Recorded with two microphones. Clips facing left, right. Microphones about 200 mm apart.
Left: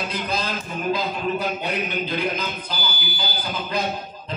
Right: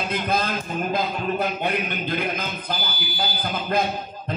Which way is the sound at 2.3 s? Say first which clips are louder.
Even; 55° right (ahead or behind).